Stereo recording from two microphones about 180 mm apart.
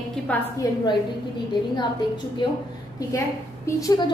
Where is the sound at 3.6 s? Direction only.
20° left (ahead or behind).